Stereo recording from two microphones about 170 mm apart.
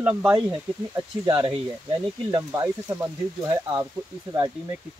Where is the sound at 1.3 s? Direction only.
25° right (ahead or behind).